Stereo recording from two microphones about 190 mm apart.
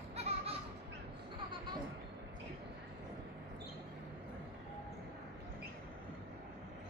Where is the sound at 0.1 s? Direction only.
35° right (ahead or behind).